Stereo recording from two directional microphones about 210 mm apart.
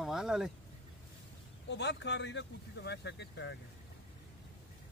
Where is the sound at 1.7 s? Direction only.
55° left (ahead or behind).